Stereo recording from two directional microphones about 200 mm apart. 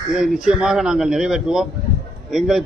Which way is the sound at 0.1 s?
Centre (ahead or behind).